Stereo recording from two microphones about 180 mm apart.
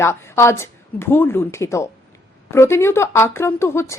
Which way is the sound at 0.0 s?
15° left (ahead or behind).